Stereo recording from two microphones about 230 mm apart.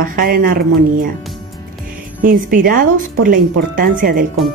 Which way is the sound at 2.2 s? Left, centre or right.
Right.